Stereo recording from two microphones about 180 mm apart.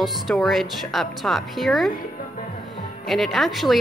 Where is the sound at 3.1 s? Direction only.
Centre (ahead or behind).